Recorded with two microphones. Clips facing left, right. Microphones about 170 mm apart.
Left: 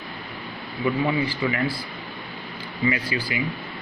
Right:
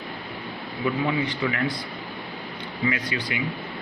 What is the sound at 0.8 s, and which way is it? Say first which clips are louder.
Speech: left 2 dB; 5° left (ahead or behind).